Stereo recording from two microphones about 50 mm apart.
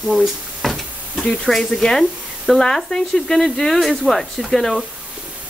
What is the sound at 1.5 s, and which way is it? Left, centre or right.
Speech, centre.